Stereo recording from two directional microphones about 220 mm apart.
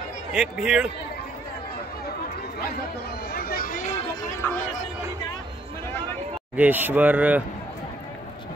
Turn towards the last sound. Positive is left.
turn(degrees=-5)  # may be behind; listen again after turning